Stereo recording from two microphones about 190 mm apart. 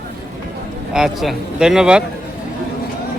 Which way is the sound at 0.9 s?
Centre (ahead or behind).